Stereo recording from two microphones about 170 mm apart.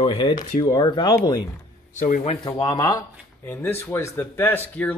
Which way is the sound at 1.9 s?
45° left (ahead or behind).